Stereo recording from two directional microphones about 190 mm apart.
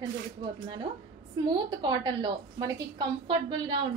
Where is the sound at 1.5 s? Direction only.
25° right (ahead or behind).